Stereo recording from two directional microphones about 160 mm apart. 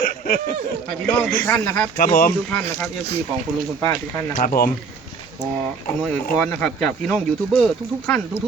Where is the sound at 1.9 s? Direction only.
55° left (ahead or behind).